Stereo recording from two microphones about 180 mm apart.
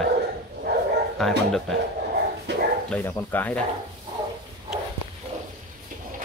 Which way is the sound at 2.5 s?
70° right (ahead or behind).